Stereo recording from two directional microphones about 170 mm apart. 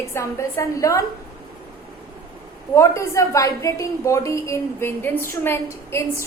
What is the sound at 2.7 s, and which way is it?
A woman's voice, 15° left (ahead or behind).